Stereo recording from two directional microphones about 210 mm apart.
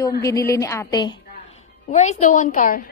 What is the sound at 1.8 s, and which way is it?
Speech, 35° left (ahead or behind).